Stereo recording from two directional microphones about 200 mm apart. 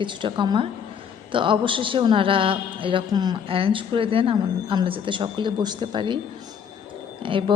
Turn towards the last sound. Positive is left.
turn(degrees=-25)  # may be behind; listen again after turning